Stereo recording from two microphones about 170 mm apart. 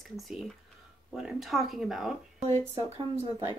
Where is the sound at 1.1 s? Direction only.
Centre (ahead or behind).